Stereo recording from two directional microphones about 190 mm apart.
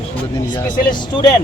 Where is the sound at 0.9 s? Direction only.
20° left (ahead or behind).